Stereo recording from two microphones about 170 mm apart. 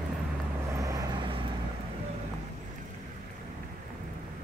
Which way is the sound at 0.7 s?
20° right (ahead or behind).